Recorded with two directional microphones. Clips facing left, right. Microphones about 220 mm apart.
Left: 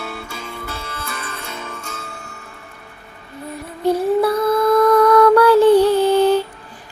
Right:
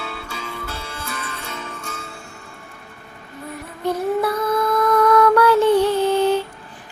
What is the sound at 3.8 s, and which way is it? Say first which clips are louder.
Music: left 4 dB; 35° left (ahead or behind).